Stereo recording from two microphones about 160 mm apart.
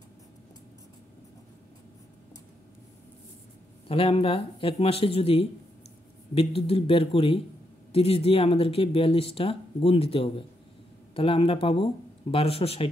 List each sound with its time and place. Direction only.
3.9 s speech: 35° left (ahead or behind)